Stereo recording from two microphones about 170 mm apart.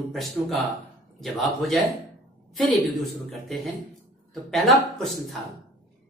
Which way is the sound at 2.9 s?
Centre (ahead or behind).